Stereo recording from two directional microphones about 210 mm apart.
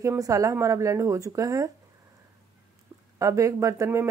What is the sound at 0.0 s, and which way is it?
Speech, 15° right (ahead or behind).